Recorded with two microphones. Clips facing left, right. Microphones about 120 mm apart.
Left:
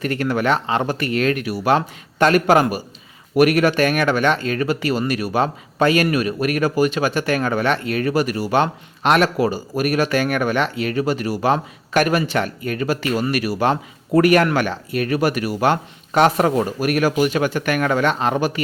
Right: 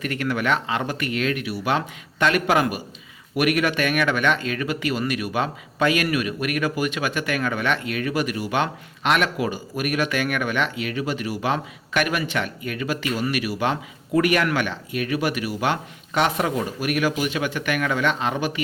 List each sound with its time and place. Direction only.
0.0 s speech: 35° left (ahead or behind)